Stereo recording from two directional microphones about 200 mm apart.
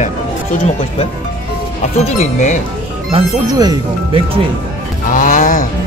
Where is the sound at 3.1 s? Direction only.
20° right (ahead or behind).